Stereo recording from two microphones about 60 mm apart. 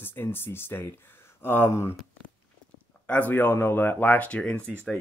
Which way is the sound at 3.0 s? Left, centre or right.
Left.